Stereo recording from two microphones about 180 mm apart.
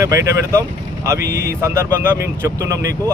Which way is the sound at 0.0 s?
15° right (ahead or behind).